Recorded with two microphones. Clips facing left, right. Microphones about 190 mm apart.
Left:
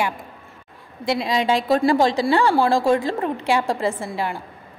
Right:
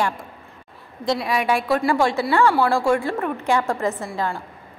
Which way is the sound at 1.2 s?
25° left (ahead or behind).